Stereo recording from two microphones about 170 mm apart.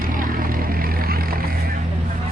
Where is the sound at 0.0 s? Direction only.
55° right (ahead or behind).